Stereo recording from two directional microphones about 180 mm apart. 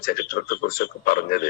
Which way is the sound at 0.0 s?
55° left (ahead or behind).